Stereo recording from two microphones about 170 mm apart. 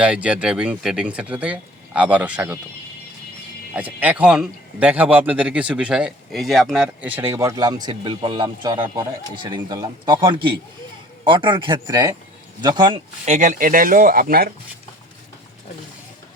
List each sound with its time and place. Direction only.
0.0 s a man's voice: 5° right (ahead or behind)
3.8 s a man's voice: 10° right (ahead or behind); by 12.9 s 25° right (ahead or behind)
13.2 s speech: 45° right (ahead or behind)